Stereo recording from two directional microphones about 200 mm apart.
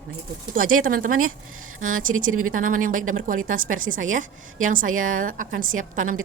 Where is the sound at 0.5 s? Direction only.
45° right (ahead or behind).